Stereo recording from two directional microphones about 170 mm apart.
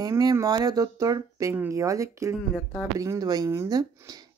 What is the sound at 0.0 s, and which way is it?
Speech, 20° right (ahead or behind).